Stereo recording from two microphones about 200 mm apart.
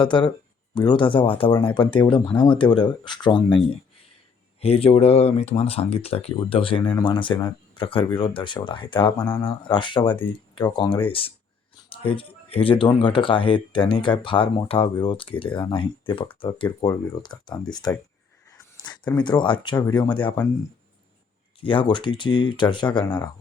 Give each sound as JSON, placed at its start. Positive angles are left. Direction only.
{"t": 0.0, "sound": "speech", "side_deg": 25}
{"t": 4.6, "sound": "speech", "side_deg": 30}
{"t": 18.5, "sound": "a sound", "side_deg": 20}
{"t": 19.1, "sound": "speech", "side_deg": 20}
{"t": 21.6, "sound": "speech", "side_deg": 25}